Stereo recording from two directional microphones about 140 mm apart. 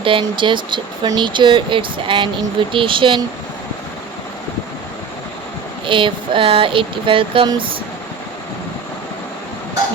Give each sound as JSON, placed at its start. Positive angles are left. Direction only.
{"t": 0.0, "sound": "speech", "side_deg": -35}
{"t": 5.8, "sound": "speech", "side_deg": -35}